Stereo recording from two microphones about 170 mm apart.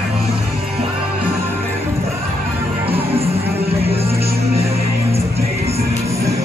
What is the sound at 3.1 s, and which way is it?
Music, 35° right (ahead or behind).